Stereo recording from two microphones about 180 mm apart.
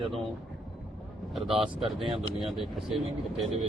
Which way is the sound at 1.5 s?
30° right (ahead or behind).